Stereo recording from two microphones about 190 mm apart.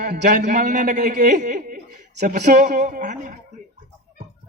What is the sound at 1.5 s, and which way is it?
Laughter, 50° right (ahead or behind).